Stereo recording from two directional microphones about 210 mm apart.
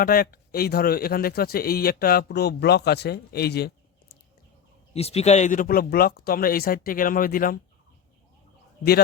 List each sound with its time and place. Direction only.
0.0 s a man's voice: 45° left (ahead or behind)
4.9 s a man's voice: 30° left (ahead or behind)